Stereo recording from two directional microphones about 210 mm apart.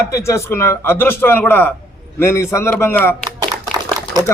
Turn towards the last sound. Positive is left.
turn(degrees=-20)  # may be behind; listen again after turning